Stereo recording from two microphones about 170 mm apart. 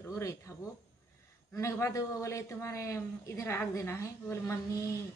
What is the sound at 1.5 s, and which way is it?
A man's voice, 15° left (ahead or behind).